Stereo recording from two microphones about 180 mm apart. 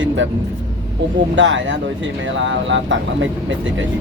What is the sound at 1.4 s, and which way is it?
Speech, 90° right.